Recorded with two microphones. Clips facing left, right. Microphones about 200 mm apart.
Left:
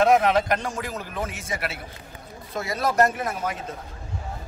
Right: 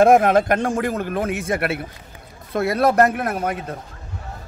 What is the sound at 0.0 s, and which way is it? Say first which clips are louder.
Speech: right 5 dB; 50° right (ahead or behind).